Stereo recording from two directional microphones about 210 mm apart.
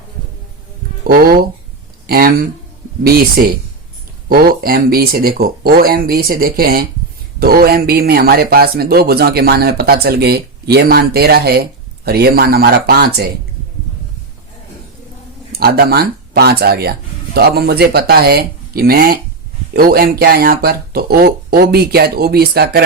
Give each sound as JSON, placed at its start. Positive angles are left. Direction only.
{"t": 1.0, "sound": "speech", "side_deg": -45}
{"t": 15.5, "sound": "speech", "side_deg": -45}